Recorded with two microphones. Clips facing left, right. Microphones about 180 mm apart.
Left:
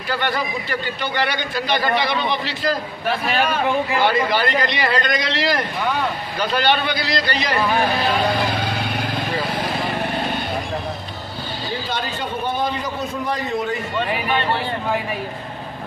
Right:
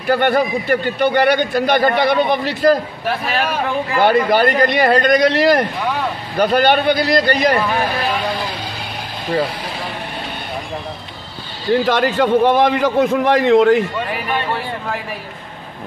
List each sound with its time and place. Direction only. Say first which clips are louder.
0.1 s a man's voice: right 8 dB; 55° right (ahead or behind)
4.0 s a man's voice: right 9 dB; 50° right (ahead or behind)
11.7 s a man's voice: right 14 dB; 80° right
13.9 s a man's voice: even; centre (ahead or behind)